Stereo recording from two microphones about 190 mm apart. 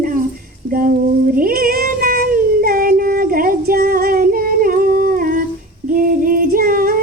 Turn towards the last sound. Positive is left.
turn(degrees=-50)  # may be behind; listen again after turning